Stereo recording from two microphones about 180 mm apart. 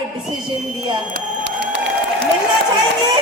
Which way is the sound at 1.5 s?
75° right (ahead or behind).